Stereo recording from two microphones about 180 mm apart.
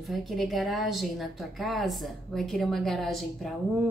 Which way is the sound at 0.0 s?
Centre (ahead or behind).